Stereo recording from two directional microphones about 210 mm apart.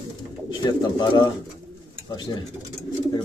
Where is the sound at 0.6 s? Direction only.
20° left (ahead or behind).